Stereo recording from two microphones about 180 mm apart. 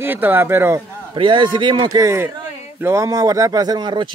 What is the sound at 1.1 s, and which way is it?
Speech, 25° right (ahead or behind).